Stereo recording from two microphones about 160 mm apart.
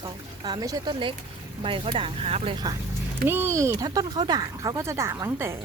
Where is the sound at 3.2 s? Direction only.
15° right (ahead or behind).